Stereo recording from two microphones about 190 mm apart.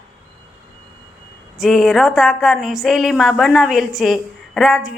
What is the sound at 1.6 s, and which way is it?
A woman's voice, centre (ahead or behind).